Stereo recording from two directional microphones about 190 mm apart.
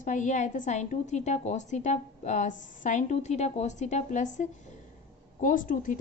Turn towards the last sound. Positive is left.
turn(degrees=45)  # may be behind; listen again after turning